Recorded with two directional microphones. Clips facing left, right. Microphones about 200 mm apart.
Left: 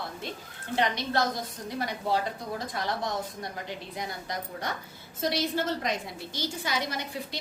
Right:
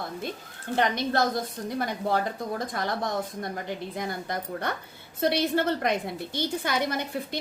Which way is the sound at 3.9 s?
55° right (ahead or behind).